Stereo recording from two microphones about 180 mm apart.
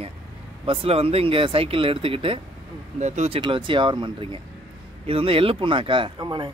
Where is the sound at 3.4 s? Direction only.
25° right (ahead or behind).